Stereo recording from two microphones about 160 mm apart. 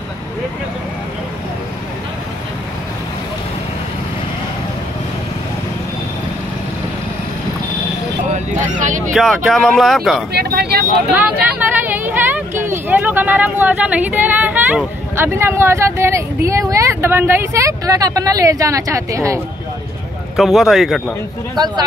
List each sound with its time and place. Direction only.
8.3 s a sound: 50° right (ahead or behind)
9.1 s speech: centre (ahead or behind)
10.3 s speech: 85° right
11.4 s vehicle: 10° right (ahead or behind)
12.1 s speech: 10° right (ahead or behind)
20.3 s speech: centre (ahead or behind)